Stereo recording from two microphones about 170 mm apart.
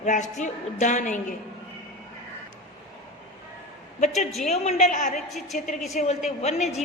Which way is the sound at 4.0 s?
40° left (ahead or behind).